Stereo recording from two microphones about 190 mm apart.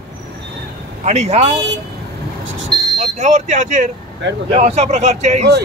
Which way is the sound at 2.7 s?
25° right (ahead or behind).